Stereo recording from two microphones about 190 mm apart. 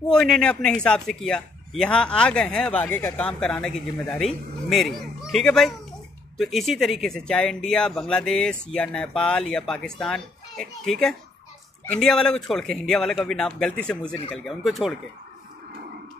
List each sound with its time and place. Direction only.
0.1 s speech: 5° left (ahead or behind)